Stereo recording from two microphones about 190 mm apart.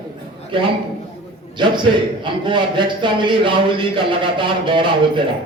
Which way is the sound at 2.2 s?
25° right (ahead or behind).